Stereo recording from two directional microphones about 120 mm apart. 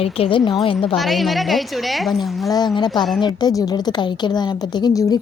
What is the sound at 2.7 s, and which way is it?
A woman's voice, 40° left (ahead or behind).